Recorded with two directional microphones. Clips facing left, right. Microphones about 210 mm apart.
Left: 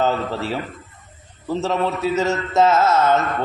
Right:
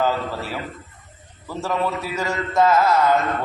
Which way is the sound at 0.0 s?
25° left (ahead or behind).